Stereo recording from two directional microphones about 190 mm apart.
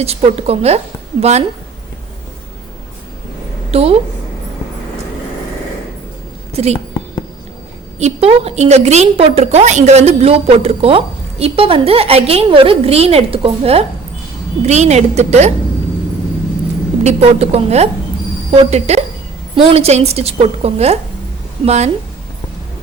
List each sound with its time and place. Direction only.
0.0 s speech: 30° right (ahead or behind)
3.7 s a woman's voice: 30° right (ahead or behind)
6.5 s a woman's voice: 35° right (ahead or behind)
7.9 s speech: 35° right (ahead or behind)
17.0 s a woman's voice: 35° right (ahead or behind)